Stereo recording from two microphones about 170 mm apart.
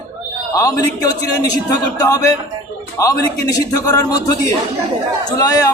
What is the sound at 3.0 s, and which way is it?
A man's voice, 20° left (ahead or behind).